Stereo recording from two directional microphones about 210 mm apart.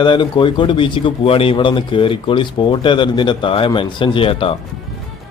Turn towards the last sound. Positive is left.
turn(degrees=25)  # may be behind; listen again after turning